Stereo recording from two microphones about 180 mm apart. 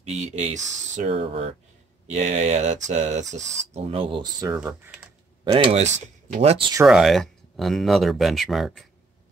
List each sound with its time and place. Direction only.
0.0 s speech: 40° right (ahead or behind); by 4.6 s 25° right (ahead or behind)
4.6 s speech: 10° right (ahead or behind)
5.4 s speech: 30° right (ahead or behind)
6.9 s speech: centre (ahead or behind)